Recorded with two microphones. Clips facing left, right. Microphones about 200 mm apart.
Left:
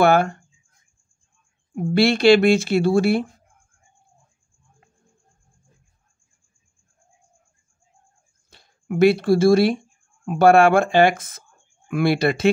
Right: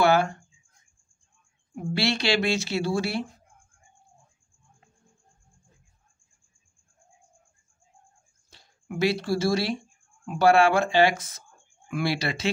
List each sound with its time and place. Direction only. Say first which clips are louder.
0.0 s a sound: left 4 dB; 55° left (ahead or behind)
1.8 s speech: left 9 dB; 55° left (ahead or behind)
8.5 s speech: left 8 dB; 55° left (ahead or behind)